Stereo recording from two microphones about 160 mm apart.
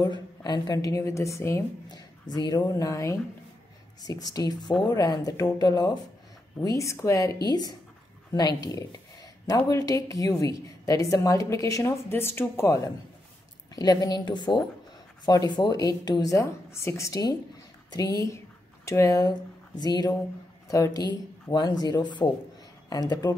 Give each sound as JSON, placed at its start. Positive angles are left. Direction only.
{"t": 0.0, "sound": "a woman's voice", "side_deg": 25}